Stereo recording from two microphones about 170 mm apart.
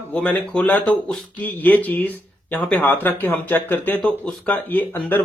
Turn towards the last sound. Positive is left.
turn(degrees=10)  # may be behind; listen again after turning